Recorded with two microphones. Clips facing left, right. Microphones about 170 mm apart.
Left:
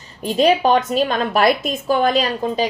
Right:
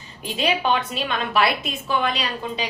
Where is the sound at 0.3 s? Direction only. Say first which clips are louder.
Left 7 dB; 40° left (ahead or behind).